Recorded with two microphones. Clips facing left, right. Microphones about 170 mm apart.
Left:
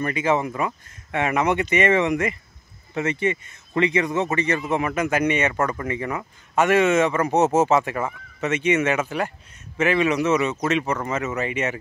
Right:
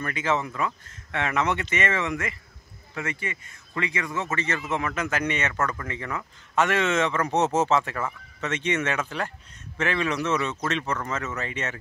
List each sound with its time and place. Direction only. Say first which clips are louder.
0.0 s a man's voice: left 5 dB; 15° left (ahead or behind)